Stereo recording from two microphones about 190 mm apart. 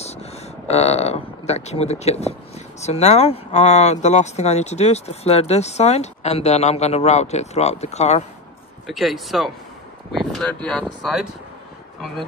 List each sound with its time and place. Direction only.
0.0 s a sound: 35° left (ahead or behind)
2.8 s speech: 35° left (ahead or behind)
8.8 s speech: centre (ahead or behind)